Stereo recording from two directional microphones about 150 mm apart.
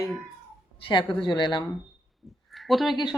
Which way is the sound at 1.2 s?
30° left (ahead or behind).